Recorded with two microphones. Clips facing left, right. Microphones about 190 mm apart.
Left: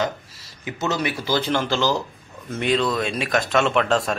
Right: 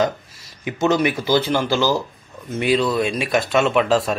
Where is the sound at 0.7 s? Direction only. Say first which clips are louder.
Right 6 dB; 15° right (ahead or behind).